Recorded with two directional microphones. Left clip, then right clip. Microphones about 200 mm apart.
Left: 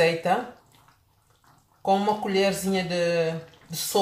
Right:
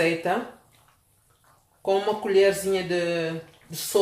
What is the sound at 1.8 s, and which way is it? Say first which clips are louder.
Speech: left 1 dB; 20° right (ahead or behind).